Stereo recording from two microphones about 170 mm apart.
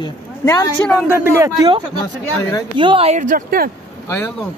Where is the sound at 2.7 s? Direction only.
30° right (ahead or behind); by 3.6 s 55° right (ahead or behind).